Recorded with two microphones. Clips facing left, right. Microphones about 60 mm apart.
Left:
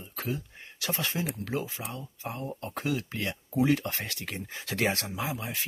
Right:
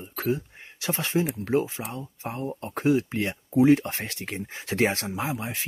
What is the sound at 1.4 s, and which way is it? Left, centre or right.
Speech, right.